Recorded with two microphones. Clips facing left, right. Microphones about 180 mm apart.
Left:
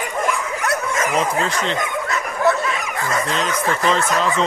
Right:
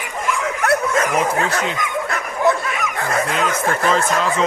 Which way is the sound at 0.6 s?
60° right (ahead or behind).